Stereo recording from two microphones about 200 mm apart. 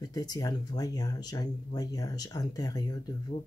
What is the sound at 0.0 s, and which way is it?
Speech, 20° left (ahead or behind).